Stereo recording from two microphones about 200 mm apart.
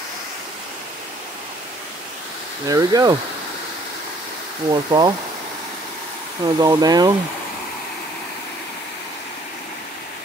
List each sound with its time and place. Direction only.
2.7 s speech: 20° right (ahead or behind)
4.6 s speech: 20° right (ahead or behind)
6.4 s speech: 20° right (ahead or behind)